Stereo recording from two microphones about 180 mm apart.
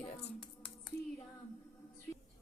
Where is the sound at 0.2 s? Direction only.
5° left (ahead or behind).